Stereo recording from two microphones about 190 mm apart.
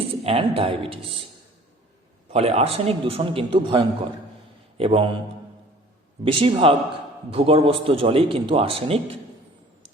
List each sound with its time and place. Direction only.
0.1 s a man's voice: 30° right (ahead or behind)
2.3 s a man's voice: 30° right (ahead or behind)
6.2 s a man's voice: 30° right (ahead or behind)